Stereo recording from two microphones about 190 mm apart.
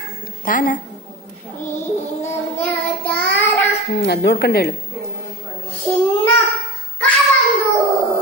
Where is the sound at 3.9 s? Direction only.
60° left (ahead or behind).